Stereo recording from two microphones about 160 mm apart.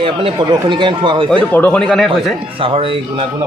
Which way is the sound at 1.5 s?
10° left (ahead or behind).